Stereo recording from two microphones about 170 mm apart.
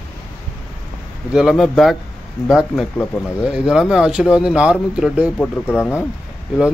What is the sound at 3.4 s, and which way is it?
Speech, 5° right (ahead or behind).